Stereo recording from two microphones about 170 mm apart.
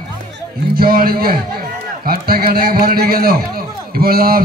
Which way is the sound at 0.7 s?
60° right (ahead or behind).